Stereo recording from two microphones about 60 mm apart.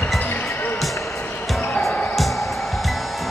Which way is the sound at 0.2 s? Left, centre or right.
Left.